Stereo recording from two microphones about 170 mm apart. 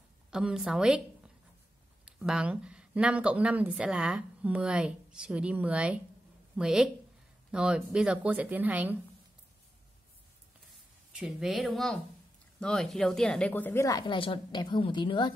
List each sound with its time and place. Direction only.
0.3 s a woman's voice: 5° right (ahead or behind)
11.1 s speech: centre (ahead or behind); by 15.3 s 25° left (ahead or behind)